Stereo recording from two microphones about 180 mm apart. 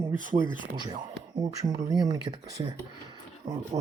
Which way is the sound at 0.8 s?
25° right (ahead or behind).